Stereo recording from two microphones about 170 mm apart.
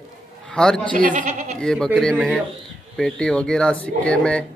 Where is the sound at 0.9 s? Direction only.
50° right (ahead or behind).